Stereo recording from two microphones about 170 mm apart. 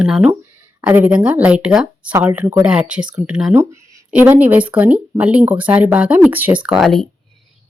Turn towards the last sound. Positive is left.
turn(degrees=0)  # may be behind; listen again after turning